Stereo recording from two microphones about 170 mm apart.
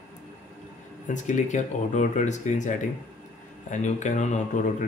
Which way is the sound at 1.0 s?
45° left (ahead or behind).